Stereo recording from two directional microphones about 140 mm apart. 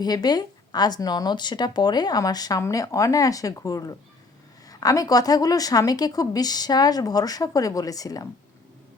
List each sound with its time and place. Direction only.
0.0 s speech: 30° left (ahead or behind)